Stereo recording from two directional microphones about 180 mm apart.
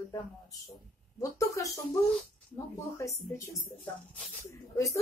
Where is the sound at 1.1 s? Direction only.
20° left (ahead or behind).